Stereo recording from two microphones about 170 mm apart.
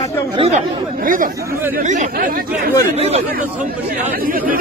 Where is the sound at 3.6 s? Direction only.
55° right (ahead or behind).